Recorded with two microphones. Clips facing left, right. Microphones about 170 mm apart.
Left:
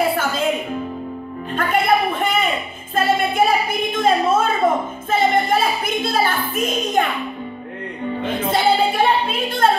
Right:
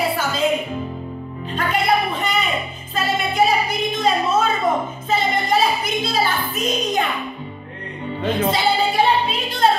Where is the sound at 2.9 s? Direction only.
50° left (ahead or behind).